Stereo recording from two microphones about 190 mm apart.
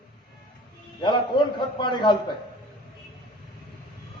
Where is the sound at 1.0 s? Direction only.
25° left (ahead or behind).